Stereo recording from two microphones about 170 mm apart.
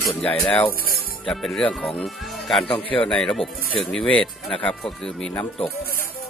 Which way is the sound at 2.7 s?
30° left (ahead or behind).